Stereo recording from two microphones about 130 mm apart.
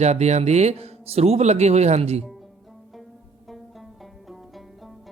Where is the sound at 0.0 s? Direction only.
60° right (ahead or behind).